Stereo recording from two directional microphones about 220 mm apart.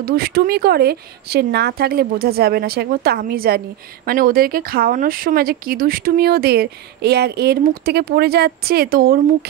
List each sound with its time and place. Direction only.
0.0 s speech: 45° right (ahead or behind)